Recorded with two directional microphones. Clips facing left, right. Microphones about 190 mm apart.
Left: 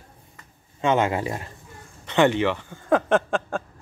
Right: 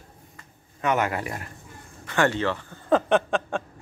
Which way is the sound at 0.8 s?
25° left (ahead or behind).